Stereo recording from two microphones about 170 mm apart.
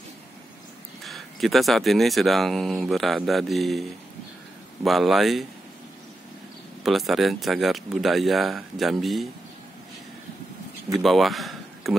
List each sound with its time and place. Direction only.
1.0 s speech: centre (ahead or behind)
4.8 s speech: centre (ahead or behind)
6.8 s speech: centre (ahead or behind)
11.0 s speech: centre (ahead or behind)